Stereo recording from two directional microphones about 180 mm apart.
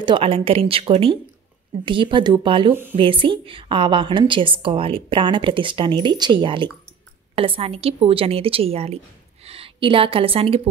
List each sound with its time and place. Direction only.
0.0 s a woman's voice: 30° right (ahead or behind)
2.7 s speech: 10° right (ahead or behind)
3.0 s a woman's voice: 30° right (ahead or behind)